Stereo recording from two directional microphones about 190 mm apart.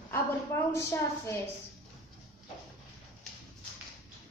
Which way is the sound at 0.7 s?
15° left (ahead or behind).